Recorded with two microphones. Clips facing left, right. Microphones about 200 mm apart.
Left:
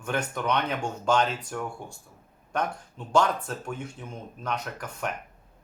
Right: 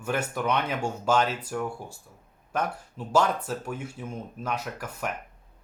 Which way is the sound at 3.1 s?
5° right (ahead or behind).